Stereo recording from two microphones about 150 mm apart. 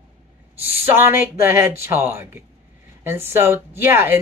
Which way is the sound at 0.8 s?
15° right (ahead or behind).